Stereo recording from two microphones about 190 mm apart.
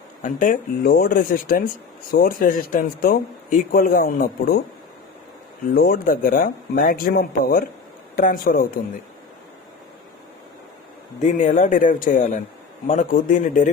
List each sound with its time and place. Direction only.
0.2 s speech: 45° left (ahead or behind)
5.7 s speech: 50° left (ahead or behind)
11.2 s speech: 40° left (ahead or behind)